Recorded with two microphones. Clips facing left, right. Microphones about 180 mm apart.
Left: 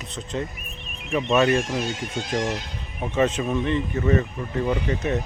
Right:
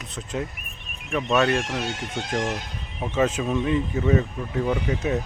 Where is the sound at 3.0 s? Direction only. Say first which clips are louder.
Left 1 dB; centre (ahead or behind).